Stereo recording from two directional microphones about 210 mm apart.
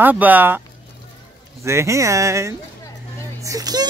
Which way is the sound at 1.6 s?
15° right (ahead or behind).